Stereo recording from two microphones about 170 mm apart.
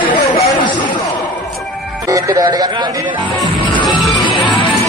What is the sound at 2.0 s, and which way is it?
Speech, 20° right (ahead or behind).